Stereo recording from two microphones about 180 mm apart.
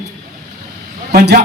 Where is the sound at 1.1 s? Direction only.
60° right (ahead or behind).